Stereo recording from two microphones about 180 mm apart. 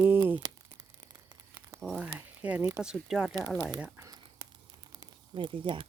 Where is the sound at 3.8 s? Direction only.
20° right (ahead or behind).